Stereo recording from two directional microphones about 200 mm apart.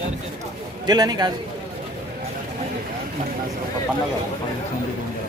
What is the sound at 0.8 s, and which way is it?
Speech, 20° right (ahead or behind).